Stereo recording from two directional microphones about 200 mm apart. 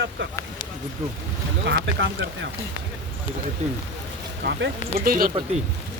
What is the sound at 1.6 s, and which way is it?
Speech, 60° right (ahead or behind).